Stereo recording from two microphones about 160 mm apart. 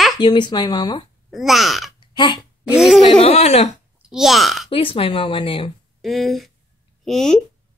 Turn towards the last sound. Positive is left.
turn(degrees=0)  # may be behind; listen again after turning